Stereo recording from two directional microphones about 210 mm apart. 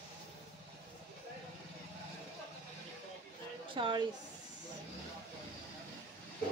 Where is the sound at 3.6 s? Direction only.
25° right (ahead or behind).